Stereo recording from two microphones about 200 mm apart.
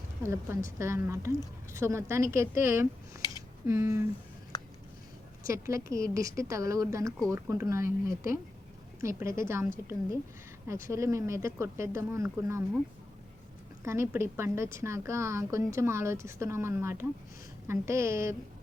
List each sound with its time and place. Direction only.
0.2 s a woman's voice: 15° right (ahead or behind)
3.2 s a sound: 20° left (ahead or behind)
3.7 s a woman's voice: 15° right (ahead or behind)
4.5 s a sound: 20° left (ahead or behind)
5.5 s a woman's voice: 15° right (ahead or behind)
10.7 s a woman's voice: 15° right (ahead or behind)
13.8 s a woman's voice: 15° right (ahead or behind)